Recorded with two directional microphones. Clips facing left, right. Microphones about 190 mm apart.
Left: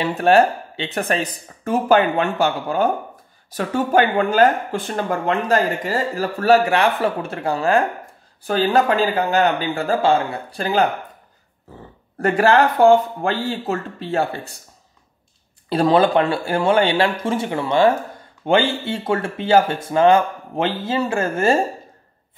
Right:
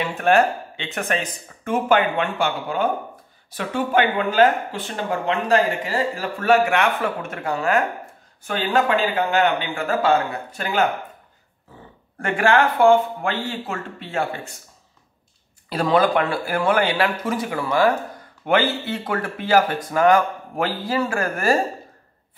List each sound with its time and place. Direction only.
0.0 s speech: 35° left (ahead or behind)
12.2 s speech: 35° left (ahead or behind)
15.7 s speech: 30° left (ahead or behind)